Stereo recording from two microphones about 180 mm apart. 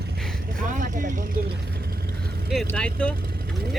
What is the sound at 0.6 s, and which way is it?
Speech, 45° right (ahead or behind).